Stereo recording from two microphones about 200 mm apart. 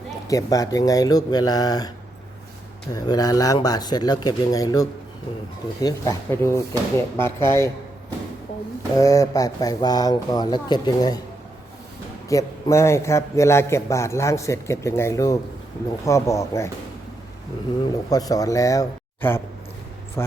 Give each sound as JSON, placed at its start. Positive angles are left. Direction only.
{"t": 0.3, "sound": "speech", "side_deg": 15}
{"t": 2.9, "sound": "a man's voice", "side_deg": 20}
{"t": 9.0, "sound": "speech", "side_deg": 15}
{"t": 12.3, "sound": "a man's voice", "side_deg": 15}
{"t": 18.1, "sound": "a man's voice", "side_deg": 20}